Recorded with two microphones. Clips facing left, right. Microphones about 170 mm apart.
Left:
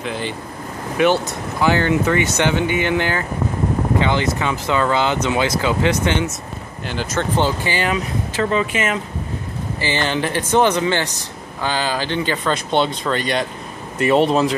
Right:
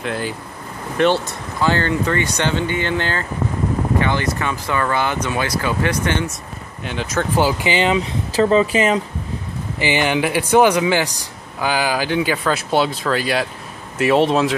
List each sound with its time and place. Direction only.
0.0 s speech: centre (ahead or behind); by 6.2 s 20° left (ahead or behind)
6.8 s speech: centre (ahead or behind)
7.7 s speech: 20° right (ahead or behind)
9.8 s speech: 15° right (ahead or behind)